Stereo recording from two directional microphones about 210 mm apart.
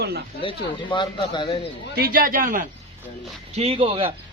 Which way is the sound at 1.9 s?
45° right (ahead or behind).